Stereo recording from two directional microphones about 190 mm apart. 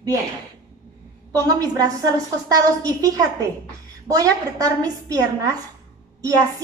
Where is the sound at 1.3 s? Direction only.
20° right (ahead or behind).